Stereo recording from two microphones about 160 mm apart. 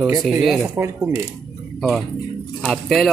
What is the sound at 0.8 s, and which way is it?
Speech, 15° right (ahead or behind).